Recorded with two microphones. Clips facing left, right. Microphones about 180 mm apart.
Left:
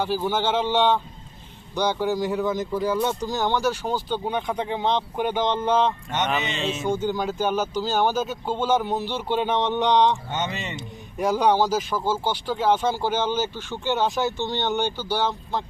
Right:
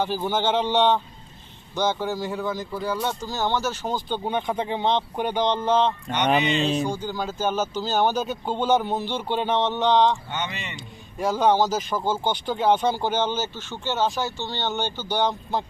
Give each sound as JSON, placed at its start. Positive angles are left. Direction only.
{"t": 0.3, "sound": "speech", "side_deg": 10}
{"t": 2.7, "sound": "speech", "side_deg": 5}
{"t": 3.1, "sound": "speech", "side_deg": 15}
{"t": 6.6, "sound": "speech", "side_deg": -40}
{"t": 6.8, "sound": "speech", "side_deg": 20}
{"t": 10.3, "sound": "speech", "side_deg": 40}
{"t": 10.8, "sound": "speech", "side_deg": 15}